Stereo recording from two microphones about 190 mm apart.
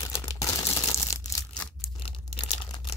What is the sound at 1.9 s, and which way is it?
Tearing, 30° left (ahead or behind).